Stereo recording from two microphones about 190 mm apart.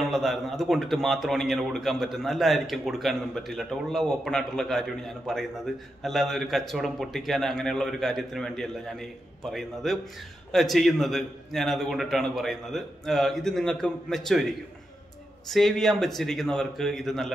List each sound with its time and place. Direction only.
0.1 s a man's voice: centre (ahead or behind)
15.5 s a man's voice: centre (ahead or behind)